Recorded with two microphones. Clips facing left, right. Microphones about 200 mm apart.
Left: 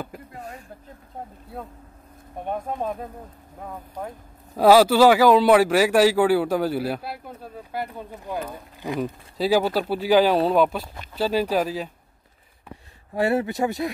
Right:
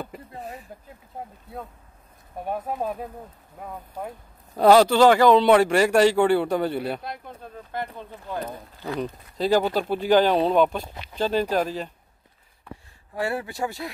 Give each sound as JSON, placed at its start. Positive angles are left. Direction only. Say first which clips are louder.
{"t": 0.4, "sound": "speech", "louder": "right 2 dB", "side_deg": 0}
{"t": 2.4, "sound": "speech", "louder": "even", "side_deg": -5}
{"t": 4.6, "sound": "speech", "louder": "left 1 dB", "side_deg": 5}
{"t": 13.1, "sound": "speech", "louder": "left 6 dB", "side_deg": 25}